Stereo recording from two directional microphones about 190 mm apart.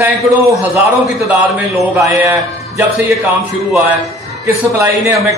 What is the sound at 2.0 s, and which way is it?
Speech, 15° right (ahead or behind).